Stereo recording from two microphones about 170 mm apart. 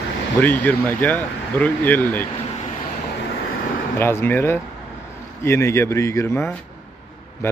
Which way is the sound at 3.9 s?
15° left (ahead or behind).